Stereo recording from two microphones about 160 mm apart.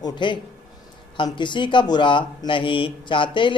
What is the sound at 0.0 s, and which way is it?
A man's voice, 30° left (ahead or behind).